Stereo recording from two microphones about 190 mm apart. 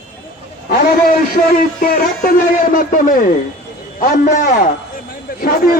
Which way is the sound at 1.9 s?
50° left (ahead or behind).